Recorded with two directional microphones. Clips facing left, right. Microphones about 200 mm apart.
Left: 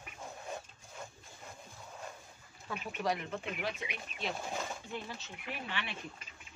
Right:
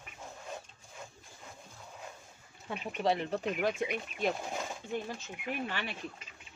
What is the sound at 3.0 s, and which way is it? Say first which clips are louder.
Speech: right 5 dB; 30° right (ahead or behind).